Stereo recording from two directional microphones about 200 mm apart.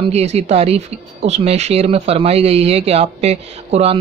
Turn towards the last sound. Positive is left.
turn(degrees=-30)  # may be behind; listen again after turning